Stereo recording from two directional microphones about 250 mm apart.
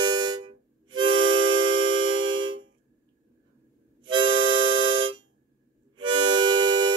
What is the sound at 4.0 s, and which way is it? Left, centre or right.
Harmonica, centre.